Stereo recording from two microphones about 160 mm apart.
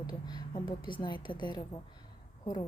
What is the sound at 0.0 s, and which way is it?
Speech, 25° left (ahead or behind).